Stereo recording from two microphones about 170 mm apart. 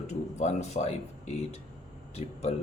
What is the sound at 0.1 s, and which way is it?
A man's voice, 40° left (ahead or behind).